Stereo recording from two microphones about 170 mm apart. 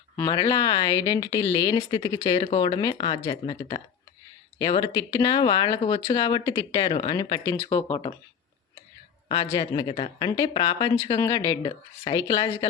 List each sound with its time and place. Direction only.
0.2 s speech: 20° left (ahead or behind)
9.5 s speech: 25° left (ahead or behind)